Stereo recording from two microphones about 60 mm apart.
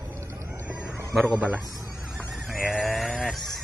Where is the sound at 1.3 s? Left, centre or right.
Right.